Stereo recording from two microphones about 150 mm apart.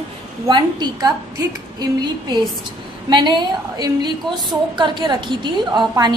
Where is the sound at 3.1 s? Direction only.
30° right (ahead or behind).